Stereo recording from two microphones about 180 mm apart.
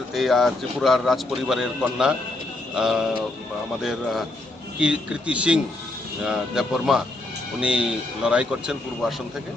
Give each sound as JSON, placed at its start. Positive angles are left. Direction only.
{"t": 0.1, "sound": "a man's voice", "side_deg": 0}
{"t": 4.8, "sound": "a man's voice", "side_deg": -5}